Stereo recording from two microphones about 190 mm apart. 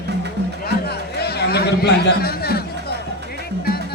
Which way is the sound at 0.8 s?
55° left (ahead or behind).